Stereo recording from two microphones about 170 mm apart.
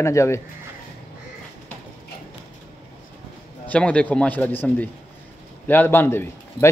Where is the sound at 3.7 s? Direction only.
10° left (ahead or behind).